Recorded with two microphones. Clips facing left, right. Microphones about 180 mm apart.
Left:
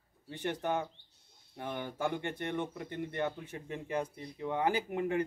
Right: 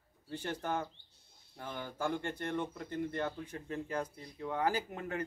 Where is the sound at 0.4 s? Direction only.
15° left (ahead or behind).